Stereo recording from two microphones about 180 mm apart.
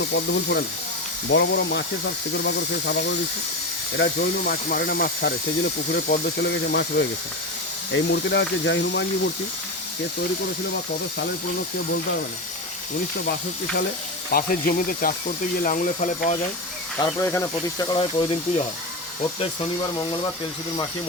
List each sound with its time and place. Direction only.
0.0 s speech: 75° left (ahead or behind)
1.3 s speech: 85° left
2.4 s speech: 75° left (ahead or behind)
7.9 s speech: 85° left
14.3 s speech: 55° left (ahead or behind)
17.0 s speech: 15° left (ahead or behind)